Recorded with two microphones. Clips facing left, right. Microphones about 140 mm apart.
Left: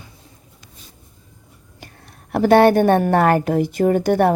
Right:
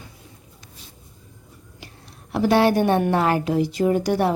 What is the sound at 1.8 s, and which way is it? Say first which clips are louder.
A woman's voice: left 3 dB; 50° left (ahead or behind).